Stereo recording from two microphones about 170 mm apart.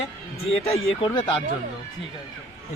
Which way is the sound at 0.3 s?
35° left (ahead or behind).